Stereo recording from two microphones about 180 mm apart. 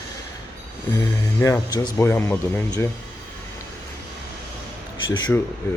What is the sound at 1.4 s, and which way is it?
Speech, 15° left (ahead or behind).